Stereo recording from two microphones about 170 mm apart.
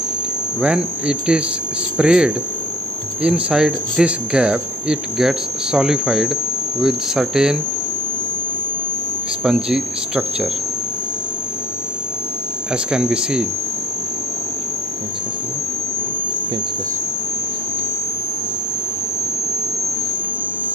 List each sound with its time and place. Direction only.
0.6 s speech: 5° right (ahead or behind)
9.4 s speech: 5° right (ahead or behind)
12.7 s speech: 5° right (ahead or behind)